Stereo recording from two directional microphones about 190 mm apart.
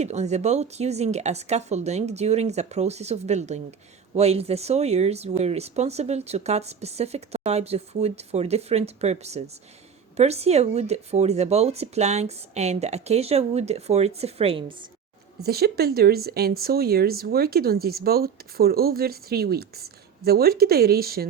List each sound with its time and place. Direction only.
0.0 s speech: 35° right (ahead or behind)
15.4 s speech: 55° right (ahead or behind)